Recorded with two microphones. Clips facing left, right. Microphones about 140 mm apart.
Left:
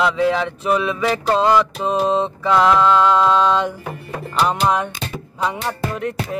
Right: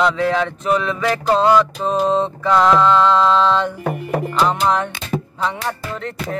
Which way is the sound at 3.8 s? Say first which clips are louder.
Right 8 dB; 45° right (ahead or behind).